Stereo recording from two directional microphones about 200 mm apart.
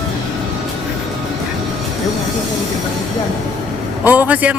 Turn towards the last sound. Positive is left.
turn(degrees=-5)  # may be behind; listen again after turning